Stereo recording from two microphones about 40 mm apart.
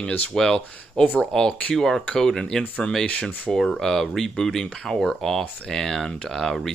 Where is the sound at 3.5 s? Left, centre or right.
Centre.